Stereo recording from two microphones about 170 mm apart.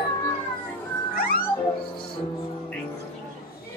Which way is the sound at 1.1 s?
60° left (ahead or behind).